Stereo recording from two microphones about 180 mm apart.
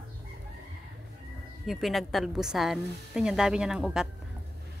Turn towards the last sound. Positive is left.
turn(degrees=-5)  # may be behind; listen again after turning